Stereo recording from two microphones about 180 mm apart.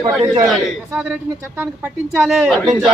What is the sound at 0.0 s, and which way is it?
Speech, 25° right (ahead or behind).